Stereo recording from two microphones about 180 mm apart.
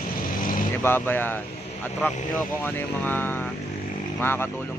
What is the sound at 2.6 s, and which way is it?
A man's voice, 10° left (ahead or behind).